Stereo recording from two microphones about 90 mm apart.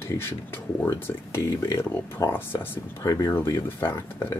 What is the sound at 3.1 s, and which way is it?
Speech, 35° left (ahead or behind).